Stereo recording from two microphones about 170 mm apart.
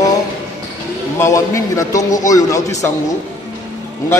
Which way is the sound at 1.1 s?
15° left (ahead or behind).